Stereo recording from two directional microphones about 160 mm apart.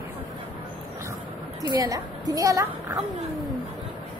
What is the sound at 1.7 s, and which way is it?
A woman's voice, 20° right (ahead or behind).